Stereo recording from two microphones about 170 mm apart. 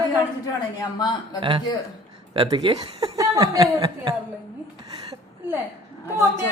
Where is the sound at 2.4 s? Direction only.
25° right (ahead or behind).